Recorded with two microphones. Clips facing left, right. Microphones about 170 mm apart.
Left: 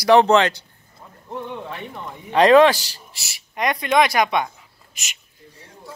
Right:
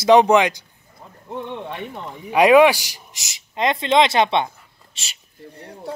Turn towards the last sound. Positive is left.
turn(degrees=-65)  # may be behind; listen again after turning